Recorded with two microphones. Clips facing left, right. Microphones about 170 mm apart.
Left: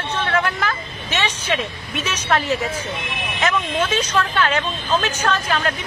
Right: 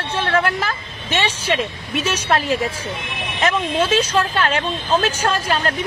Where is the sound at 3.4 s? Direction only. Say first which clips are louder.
Right 2 dB; 30° right (ahead or behind).